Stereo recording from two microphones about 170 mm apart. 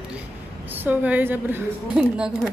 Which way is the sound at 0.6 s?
10° right (ahead or behind).